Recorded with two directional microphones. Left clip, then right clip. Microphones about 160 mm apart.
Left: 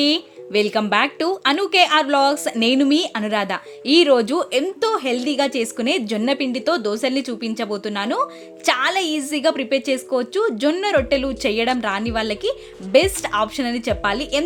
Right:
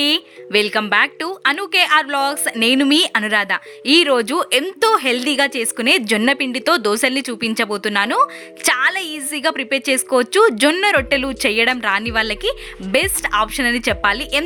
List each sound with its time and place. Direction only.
0.0 s speech: 15° right (ahead or behind)